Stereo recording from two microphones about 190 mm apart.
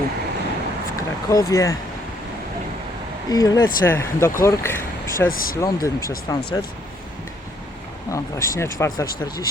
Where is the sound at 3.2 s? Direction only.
20° left (ahead or behind).